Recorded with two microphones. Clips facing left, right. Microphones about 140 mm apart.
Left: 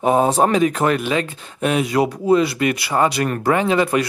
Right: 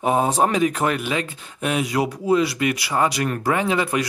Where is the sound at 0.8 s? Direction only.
25° left (ahead or behind).